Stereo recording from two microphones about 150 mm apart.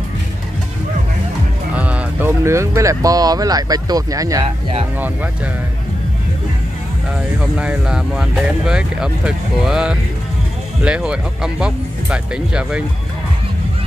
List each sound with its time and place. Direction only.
1.8 s speech: 10° right (ahead or behind)
5.0 s speech: 10° right (ahead or behind)
7.3 s speech: 10° right (ahead or behind)